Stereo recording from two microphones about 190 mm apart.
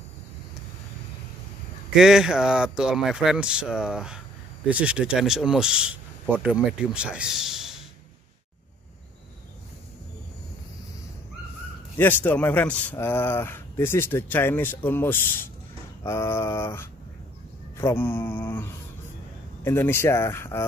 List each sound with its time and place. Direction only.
2.0 s speech: 5° right (ahead or behind)
12.0 s speech: 10° left (ahead or behind)